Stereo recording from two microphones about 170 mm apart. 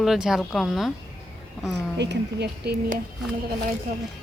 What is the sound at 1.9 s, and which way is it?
Speech, 90° right.